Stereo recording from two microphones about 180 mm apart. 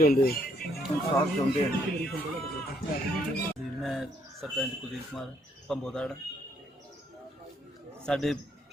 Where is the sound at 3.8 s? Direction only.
Centre (ahead or behind).